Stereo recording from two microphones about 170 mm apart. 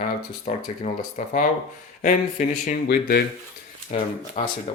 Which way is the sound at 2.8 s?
70° left (ahead or behind).